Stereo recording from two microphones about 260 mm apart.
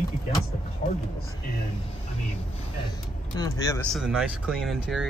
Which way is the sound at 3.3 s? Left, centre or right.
Centre.